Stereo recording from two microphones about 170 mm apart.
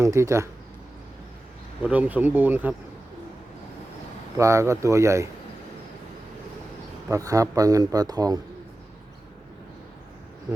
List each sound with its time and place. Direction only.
0.0 s speech: 15° right (ahead or behind)
1.8 s speech: 10° right (ahead or behind)
4.4 s speech: 15° right (ahead or behind)
7.1 s speech: 20° right (ahead or behind)